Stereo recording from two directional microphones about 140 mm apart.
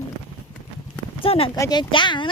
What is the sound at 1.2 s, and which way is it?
Speech, 40° left (ahead or behind).